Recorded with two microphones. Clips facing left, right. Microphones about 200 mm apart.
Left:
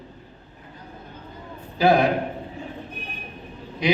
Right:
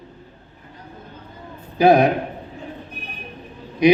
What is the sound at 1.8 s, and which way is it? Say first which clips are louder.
Speech: right 4 dB; 20° right (ahead or behind).